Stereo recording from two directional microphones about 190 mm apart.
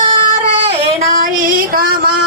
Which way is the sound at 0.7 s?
40° right (ahead or behind).